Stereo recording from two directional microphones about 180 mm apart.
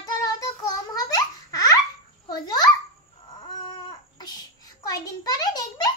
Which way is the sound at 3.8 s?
25° left (ahead or behind).